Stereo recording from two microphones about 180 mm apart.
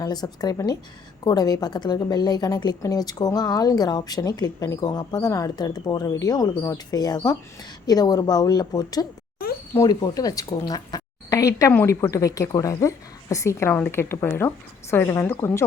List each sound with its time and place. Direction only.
0.0 s a woman's voice: 20° left (ahead or behind)